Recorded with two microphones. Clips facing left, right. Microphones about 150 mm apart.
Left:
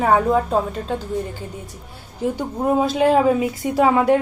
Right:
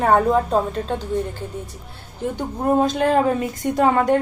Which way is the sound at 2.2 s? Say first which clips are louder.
Left 2 dB; 5° left (ahead or behind).